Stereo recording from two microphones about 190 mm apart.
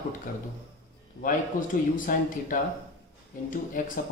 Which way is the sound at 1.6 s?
45° left (ahead or behind).